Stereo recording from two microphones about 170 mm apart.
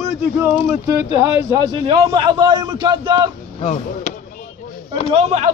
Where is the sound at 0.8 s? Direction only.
20° right (ahead or behind).